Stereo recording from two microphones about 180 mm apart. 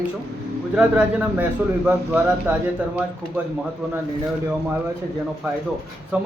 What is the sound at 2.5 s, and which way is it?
Speech, 10° right (ahead or behind).